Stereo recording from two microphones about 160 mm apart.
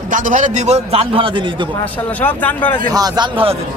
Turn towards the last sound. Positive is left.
turn(degrees=-35)  # may be behind; listen again after turning